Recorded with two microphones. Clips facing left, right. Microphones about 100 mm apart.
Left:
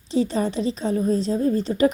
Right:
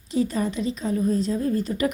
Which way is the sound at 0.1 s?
25° left (ahead or behind).